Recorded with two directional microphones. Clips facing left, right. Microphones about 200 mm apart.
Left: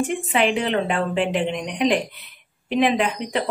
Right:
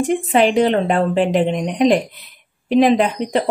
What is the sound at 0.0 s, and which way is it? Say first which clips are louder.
A woman's voice: right 6 dB; 40° right (ahead or behind).